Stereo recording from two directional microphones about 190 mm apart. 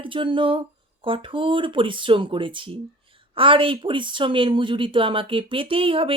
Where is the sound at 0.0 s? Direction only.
25° right (ahead or behind).